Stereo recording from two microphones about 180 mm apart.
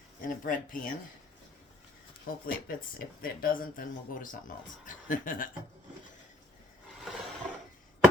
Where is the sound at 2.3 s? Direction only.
55° left (ahead or behind).